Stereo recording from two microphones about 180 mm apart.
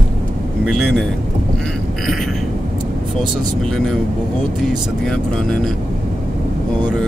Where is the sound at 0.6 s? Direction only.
Centre (ahead or behind).